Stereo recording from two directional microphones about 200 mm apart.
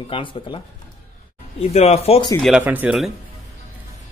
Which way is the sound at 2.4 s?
5° right (ahead or behind).